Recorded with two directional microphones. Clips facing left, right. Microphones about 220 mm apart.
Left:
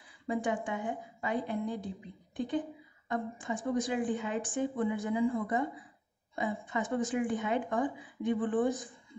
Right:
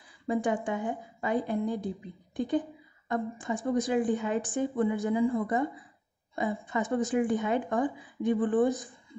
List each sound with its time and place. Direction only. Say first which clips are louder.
0.3 s a woman's voice: right 4 dB; 40° right (ahead or behind)